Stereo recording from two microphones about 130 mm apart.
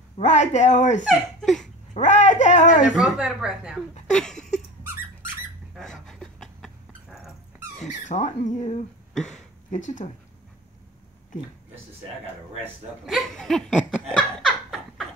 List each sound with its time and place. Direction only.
0.2 s speech: 65° left (ahead or behind)
1.0 s speech: centre (ahead or behind)
2.0 s speech: 65° left (ahead or behind)
2.8 s speech: 5° right (ahead or behind)
4.1 s a sound: 5° left (ahead or behind)
5.8 s dog: 5° left (ahead or behind)
8.1 s speech: 60° left (ahead or behind)
9.1 s speech: 5° left (ahead or behind)
9.7 s speech: 75° left (ahead or behind)
13.0 s laughter: centre (ahead or behind)